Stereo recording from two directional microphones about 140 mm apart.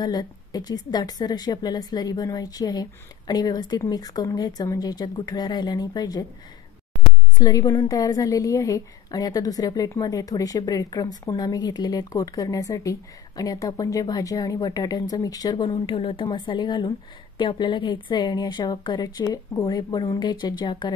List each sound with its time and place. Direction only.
0.0 s a woman's voice: 30° left (ahead or behind)
7.3 s a woman's voice: 25° left (ahead or behind)